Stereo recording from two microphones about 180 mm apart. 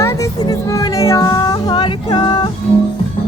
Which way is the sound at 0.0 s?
15° left (ahead or behind).